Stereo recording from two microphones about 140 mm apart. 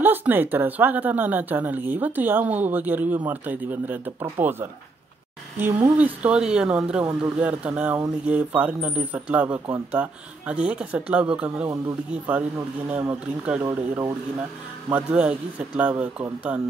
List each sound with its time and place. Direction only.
0.0 s speech: 15° right (ahead or behind)
14.9 s speech: 10° right (ahead or behind)